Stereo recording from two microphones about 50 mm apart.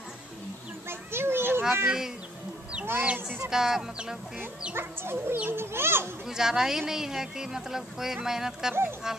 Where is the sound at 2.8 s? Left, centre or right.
Right.